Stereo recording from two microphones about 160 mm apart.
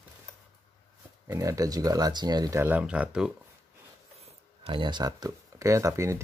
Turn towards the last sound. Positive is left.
turn(degrees=-20)  # may be behind; listen again after turning